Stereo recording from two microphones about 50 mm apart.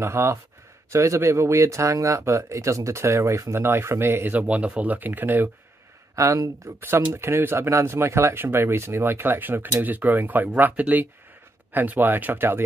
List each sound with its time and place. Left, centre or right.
0.0 s speech: right
0.9 s speech: right
4.3 s speech: right
6.1 s speech: right
6.8 s speech: right